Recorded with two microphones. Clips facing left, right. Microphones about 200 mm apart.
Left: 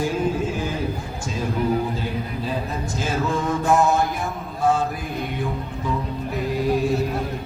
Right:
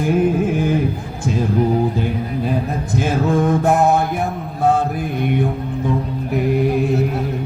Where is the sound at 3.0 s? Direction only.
55° right (ahead or behind).